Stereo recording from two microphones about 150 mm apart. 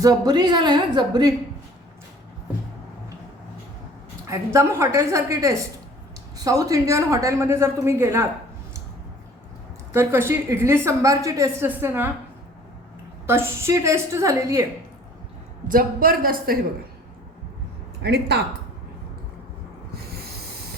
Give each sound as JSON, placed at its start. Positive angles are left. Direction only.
{"t": 0.0, "sound": "speech", "side_deg": -25}
{"t": 4.3, "sound": "speech", "side_deg": -20}
{"t": 9.9, "sound": "a woman's voice", "side_deg": -15}
{"t": 13.2, "sound": "a woman's voice", "side_deg": -15}
{"t": 15.6, "sound": "a woman's voice", "side_deg": -65}
{"t": 18.0, "sound": "speech", "side_deg": -90}
{"t": 20.0, "sound": "a sound", "side_deg": -90}